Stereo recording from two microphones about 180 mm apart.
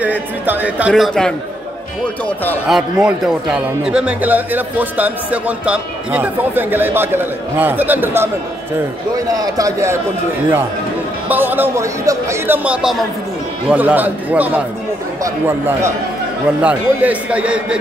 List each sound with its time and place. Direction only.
0.0 s speech: 10° right (ahead or behind); by 2.6 s 10° left (ahead or behind)
2.7 s a man's voice: 5° right (ahead or behind)
11.2 s speech: 10° right (ahead or behind)